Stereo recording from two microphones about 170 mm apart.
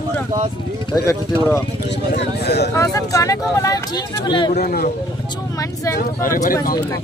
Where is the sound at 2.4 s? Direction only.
75° left (ahead or behind).